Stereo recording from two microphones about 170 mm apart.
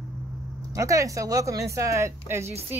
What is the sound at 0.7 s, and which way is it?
Speech, 20° right (ahead or behind).